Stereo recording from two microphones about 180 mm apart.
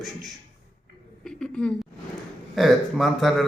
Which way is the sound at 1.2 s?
5° left (ahead or behind).